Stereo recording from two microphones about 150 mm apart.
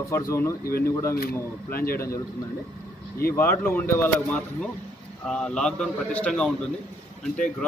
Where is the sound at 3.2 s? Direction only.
15° left (ahead or behind).